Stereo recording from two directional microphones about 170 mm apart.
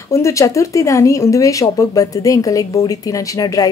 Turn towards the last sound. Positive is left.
turn(degrees=20)  # may be behind; listen again after turning